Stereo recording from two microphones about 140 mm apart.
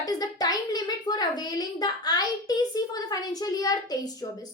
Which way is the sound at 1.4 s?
30° left (ahead or behind).